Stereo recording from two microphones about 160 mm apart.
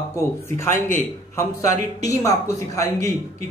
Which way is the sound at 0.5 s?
15° left (ahead or behind).